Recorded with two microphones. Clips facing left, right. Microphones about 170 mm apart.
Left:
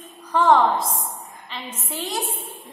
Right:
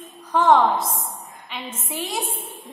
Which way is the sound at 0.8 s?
25° right (ahead or behind).